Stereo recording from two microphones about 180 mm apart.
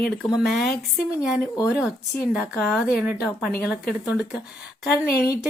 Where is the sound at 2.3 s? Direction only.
Centre (ahead or behind).